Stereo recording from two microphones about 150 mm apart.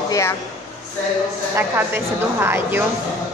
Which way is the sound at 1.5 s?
15° right (ahead or behind).